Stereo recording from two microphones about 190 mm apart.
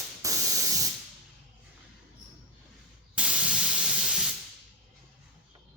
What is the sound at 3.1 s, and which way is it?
Spray, 5° right (ahead or behind).